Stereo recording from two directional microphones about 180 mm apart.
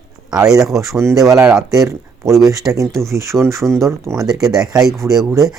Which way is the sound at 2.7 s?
5° right (ahead or behind).